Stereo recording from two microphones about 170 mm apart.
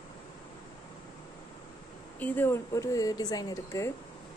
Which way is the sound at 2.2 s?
10° left (ahead or behind).